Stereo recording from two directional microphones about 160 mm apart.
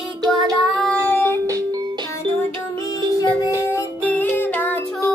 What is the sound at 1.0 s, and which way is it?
Child singing, 15° left (ahead or behind).